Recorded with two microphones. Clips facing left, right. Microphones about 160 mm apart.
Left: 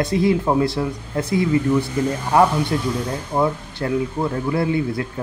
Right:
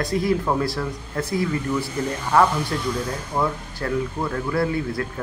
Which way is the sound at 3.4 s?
25° left (ahead or behind).